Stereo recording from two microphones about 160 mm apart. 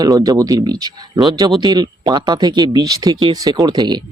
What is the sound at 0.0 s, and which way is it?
Speech, 20° right (ahead or behind).